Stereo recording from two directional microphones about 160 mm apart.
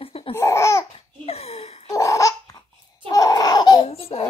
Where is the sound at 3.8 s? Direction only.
40° left (ahead or behind).